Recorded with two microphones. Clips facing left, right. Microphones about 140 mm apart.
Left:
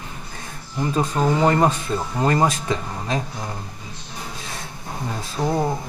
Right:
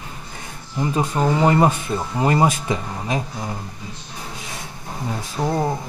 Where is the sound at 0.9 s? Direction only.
10° right (ahead or behind).